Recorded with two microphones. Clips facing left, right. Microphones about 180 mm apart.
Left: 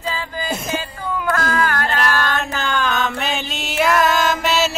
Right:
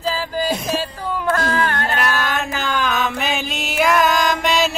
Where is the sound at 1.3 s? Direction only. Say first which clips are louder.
Even; 30° right (ahead or behind).